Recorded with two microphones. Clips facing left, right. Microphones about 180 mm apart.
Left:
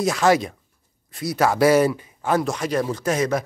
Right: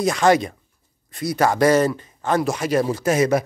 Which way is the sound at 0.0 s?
Centre (ahead or behind).